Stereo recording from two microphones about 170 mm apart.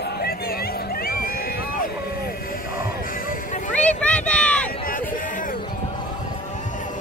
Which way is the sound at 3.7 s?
5° left (ahead or behind).